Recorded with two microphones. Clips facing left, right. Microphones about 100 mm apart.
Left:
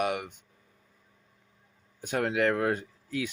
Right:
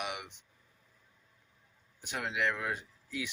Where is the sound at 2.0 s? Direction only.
45° left (ahead or behind).